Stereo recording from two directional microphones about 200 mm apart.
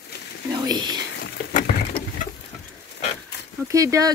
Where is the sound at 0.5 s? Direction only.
20° right (ahead or behind).